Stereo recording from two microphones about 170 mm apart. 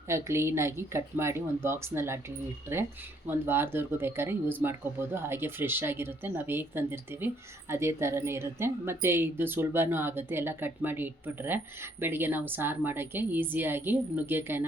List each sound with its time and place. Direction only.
0.1 s a woman's voice: 15° right (ahead or behind)
3.2 s a woman's voice: 15° right (ahead or behind)